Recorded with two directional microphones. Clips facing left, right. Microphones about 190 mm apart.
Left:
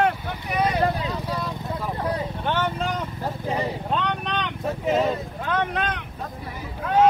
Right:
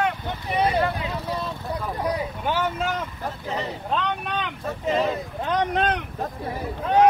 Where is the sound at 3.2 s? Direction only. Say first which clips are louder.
Left 5 dB; 10° left (ahead or behind).